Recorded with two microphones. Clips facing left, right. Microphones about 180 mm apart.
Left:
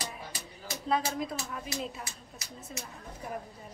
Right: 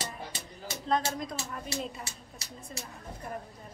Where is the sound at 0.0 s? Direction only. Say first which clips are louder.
Right 1 dB; 25° right (ahead or behind).